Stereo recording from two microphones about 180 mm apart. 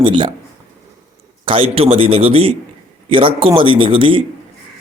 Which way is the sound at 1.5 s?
30° right (ahead or behind).